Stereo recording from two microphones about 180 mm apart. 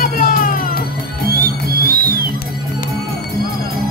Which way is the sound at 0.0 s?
50° left (ahead or behind).